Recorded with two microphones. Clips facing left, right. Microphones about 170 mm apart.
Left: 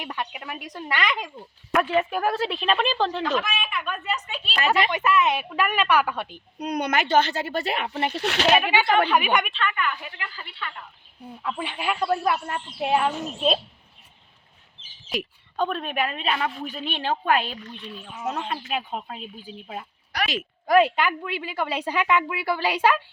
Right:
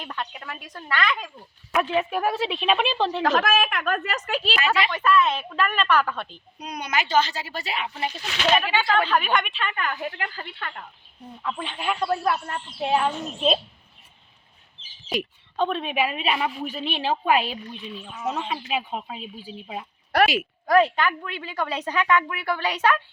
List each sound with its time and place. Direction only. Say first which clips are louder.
0.0 s a woman's voice: left 1 dB; 10° left (ahead or behind)
1.7 s a woman's voice: left 1 dB; centre (ahead or behind)
3.2 s a woman's voice: right 5 dB; 90° right
4.9 s a woman's voice: even; 15° left (ahead or behind)
6.6 s speech: left 4 dB; 55° left (ahead or behind)
9.0 s a woman's voice: left 1 dB; 15° left (ahead or behind)
9.7 s a woman's voice: right 1 dB; 45° right (ahead or behind)
11.4 s a woman's voice: even; 5° left (ahead or behind)
15.1 s a woman's voice: right 2 dB; centre (ahead or behind)